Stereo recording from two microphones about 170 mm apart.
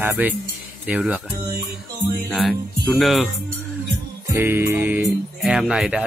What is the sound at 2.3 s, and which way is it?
Speech, centre (ahead or behind).